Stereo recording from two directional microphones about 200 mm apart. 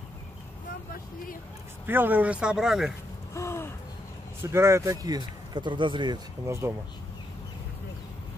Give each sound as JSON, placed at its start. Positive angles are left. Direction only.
{"t": 1.9, "sound": "speech", "side_deg": -10}
{"t": 3.3, "sound": "a sound", "side_deg": 15}
{"t": 4.4, "sound": "speech", "side_deg": -15}